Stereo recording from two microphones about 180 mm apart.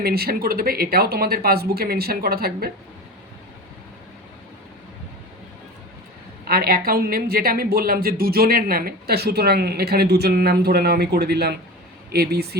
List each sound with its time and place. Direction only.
0.0 s a woman's voice: 60° right (ahead or behind)
6.4 s a woman's voice: 60° right (ahead or behind)